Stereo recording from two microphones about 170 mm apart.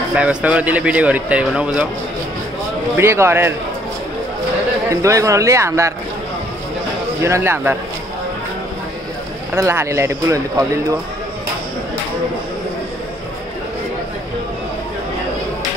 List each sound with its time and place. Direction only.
0.1 s speech: 5° right (ahead or behind)
3.0 s speech: 15° right (ahead or behind)
4.8 s speech: 20° right (ahead or behind)
7.2 s speech: 15° right (ahead or behind)
9.5 s speech: 15° right (ahead or behind)